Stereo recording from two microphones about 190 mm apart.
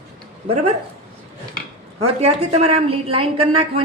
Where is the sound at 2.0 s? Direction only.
30° right (ahead or behind).